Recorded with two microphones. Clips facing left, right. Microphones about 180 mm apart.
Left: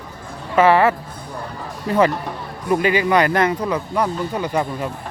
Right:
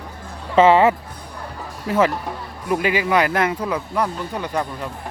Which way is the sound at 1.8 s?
5° right (ahead or behind).